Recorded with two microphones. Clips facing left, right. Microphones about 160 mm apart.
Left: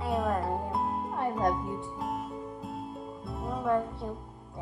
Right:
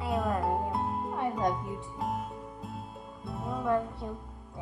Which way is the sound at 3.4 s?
Centre (ahead or behind).